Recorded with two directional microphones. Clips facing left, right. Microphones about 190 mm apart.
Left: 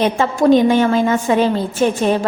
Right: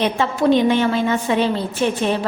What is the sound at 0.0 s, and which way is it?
A woman's voice, 45° left (ahead or behind).